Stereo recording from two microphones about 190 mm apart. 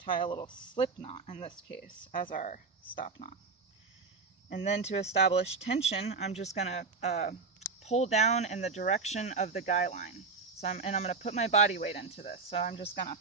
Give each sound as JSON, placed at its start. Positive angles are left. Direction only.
{"t": 0.0, "sound": "speech", "side_deg": 25}
{"t": 1.7, "sound": "speech", "side_deg": 50}
{"t": 2.3, "sound": "speech", "side_deg": 40}
{"t": 4.6, "sound": "speech", "side_deg": 35}